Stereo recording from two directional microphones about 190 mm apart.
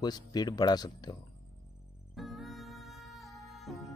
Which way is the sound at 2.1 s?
Centre (ahead or behind).